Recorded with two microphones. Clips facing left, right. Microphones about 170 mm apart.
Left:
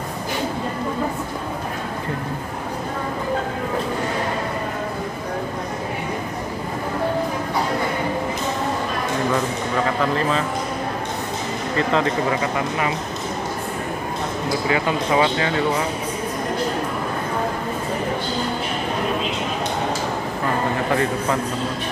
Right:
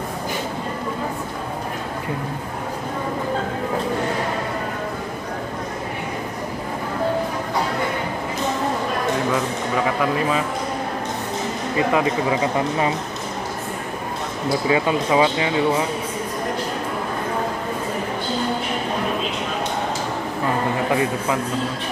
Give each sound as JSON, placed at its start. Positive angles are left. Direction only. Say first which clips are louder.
{"t": 11.7, "sound": "speech", "louder": "right 1 dB", "side_deg": -10}
{"t": 14.7, "sound": "speech", "louder": "right 2 dB", "side_deg": -15}
{"t": 20.9, "sound": "speech", "louder": "left 1 dB", "side_deg": -10}